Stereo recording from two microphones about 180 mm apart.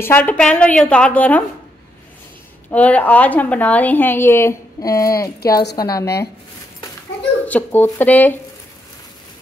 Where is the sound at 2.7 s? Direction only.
10° left (ahead or behind).